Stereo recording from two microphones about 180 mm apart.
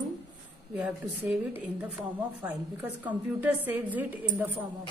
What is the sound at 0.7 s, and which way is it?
Speech, 5° right (ahead or behind).